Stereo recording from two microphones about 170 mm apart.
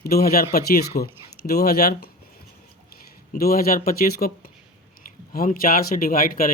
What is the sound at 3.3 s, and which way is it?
Speech, 60° left (ahead or behind).